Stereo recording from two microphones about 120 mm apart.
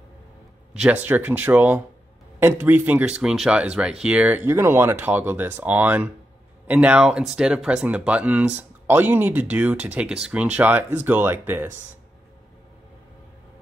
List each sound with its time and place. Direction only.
1.0 s speech: 15° right (ahead or behind)
4.5 s speech: 20° right (ahead or behind)